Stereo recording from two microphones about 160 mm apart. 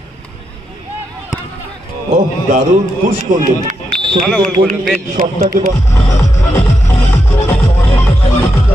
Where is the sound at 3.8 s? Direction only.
30° right (ahead or behind).